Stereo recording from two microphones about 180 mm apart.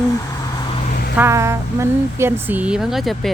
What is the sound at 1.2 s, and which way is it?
Speech, 15° right (ahead or behind).